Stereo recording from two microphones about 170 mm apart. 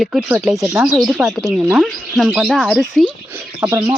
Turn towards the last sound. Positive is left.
turn(degrees=-20)  # may be behind; listen again after turning